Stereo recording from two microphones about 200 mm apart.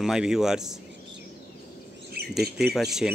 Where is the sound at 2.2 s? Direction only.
50° right (ahead or behind).